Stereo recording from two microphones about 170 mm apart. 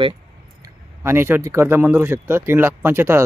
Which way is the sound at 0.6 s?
15° right (ahead or behind).